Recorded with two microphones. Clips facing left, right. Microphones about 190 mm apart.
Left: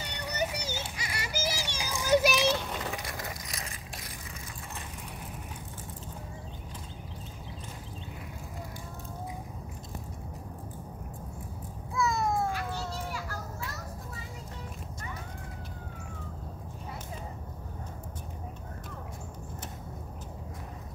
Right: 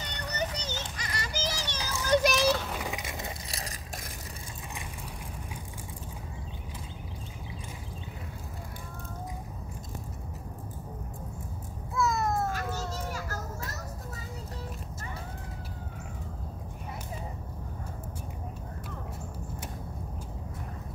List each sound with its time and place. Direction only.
0.0 s children playing: 10° left (ahead or behind)
2.8 s keys jangling: 15° right (ahead or behind)
11.9 s a sound: centre (ahead or behind)
12.5 s children playing: 45° right (ahead or behind)